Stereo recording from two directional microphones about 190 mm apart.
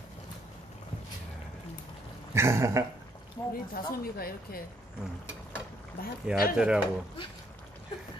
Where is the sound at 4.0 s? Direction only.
50° left (ahead or behind).